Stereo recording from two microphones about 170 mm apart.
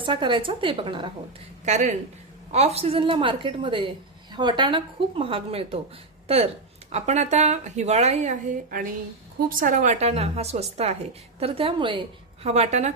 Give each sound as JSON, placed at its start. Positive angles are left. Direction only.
{"t": 0.0, "sound": "a woman's voice", "side_deg": -30}
{"t": 1.6, "sound": "speech", "side_deg": -45}